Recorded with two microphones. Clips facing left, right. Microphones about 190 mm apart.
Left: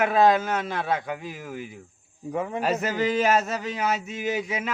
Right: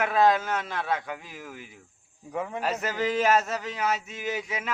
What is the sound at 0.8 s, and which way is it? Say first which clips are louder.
Speech: left 3 dB; 20° left (ahead or behind).